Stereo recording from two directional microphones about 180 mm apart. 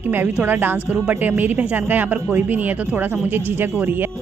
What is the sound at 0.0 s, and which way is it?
A woman's voice, 10° right (ahead or behind).